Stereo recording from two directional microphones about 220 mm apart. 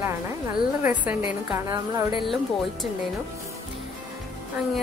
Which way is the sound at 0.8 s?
10° right (ahead or behind).